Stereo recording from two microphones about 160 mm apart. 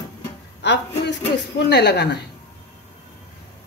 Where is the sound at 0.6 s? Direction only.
90° left.